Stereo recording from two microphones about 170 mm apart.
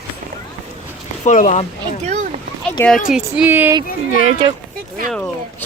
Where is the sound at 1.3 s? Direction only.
45° left (ahead or behind).